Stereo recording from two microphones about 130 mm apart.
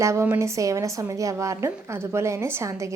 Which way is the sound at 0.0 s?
20° right (ahead or behind).